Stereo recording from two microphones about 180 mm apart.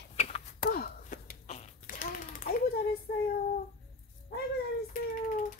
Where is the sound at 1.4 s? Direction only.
40° left (ahead or behind).